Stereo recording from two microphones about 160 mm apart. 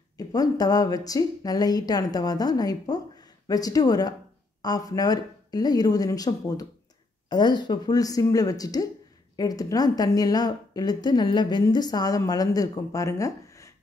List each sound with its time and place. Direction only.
0.2 s a woman's voice: 25° left (ahead or behind)